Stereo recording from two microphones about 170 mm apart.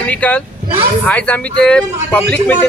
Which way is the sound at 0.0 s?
10° left (ahead or behind).